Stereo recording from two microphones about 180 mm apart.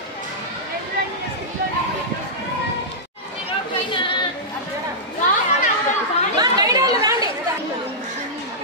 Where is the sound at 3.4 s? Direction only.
30° left (ahead or behind).